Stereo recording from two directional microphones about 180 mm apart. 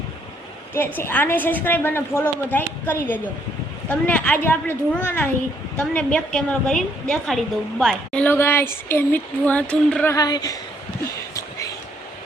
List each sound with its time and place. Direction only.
0.9 s a woman's voice: 10° left (ahead or behind)
10.2 s a woman's voice: 20° left (ahead or behind)